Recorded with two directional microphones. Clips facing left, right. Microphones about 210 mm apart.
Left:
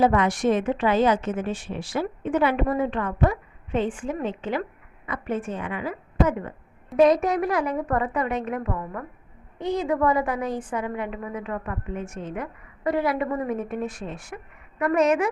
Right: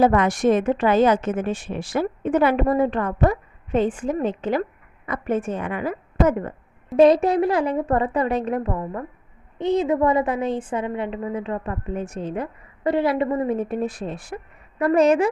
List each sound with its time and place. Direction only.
0.0 s a woman's voice: 45° right (ahead or behind)
6.9 s a woman's voice: 30° right (ahead or behind)